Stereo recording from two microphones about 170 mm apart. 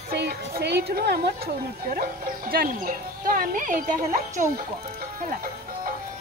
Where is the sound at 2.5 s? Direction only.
60° right (ahead or behind).